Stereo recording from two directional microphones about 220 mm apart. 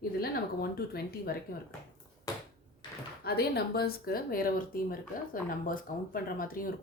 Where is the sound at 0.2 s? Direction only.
45° left (ahead or behind).